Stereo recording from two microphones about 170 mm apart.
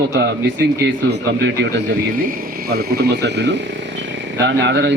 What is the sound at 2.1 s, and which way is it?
Speech, 55° right (ahead or behind).